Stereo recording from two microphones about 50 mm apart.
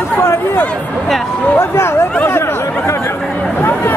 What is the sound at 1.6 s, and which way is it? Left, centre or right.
Speech, left.